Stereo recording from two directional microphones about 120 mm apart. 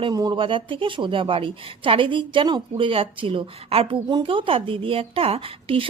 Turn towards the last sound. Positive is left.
turn(degrees=-50)  # may be behind; listen again after turning